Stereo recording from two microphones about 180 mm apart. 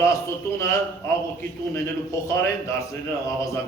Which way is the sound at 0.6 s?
15° left (ahead or behind).